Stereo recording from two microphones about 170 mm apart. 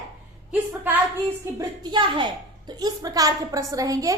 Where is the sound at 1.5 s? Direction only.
25° right (ahead or behind).